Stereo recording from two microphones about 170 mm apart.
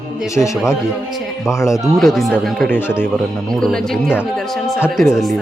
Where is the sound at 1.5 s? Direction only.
15° left (ahead or behind).